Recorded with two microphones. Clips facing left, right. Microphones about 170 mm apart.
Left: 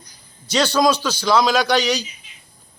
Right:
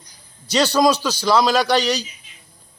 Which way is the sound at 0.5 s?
5° right (ahead or behind).